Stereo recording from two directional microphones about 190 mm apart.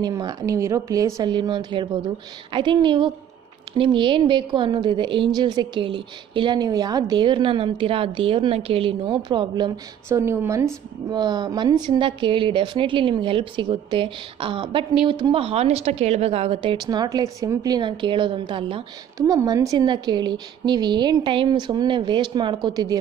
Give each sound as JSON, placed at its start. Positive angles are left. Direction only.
{"t": 0.0, "sound": "a woman's voice", "side_deg": -20}
{"t": 10.0, "sound": "a woman's voice", "side_deg": -15}